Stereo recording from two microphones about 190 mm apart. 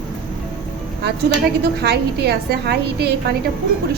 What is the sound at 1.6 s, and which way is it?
A woman's voice, 60° right (ahead or behind).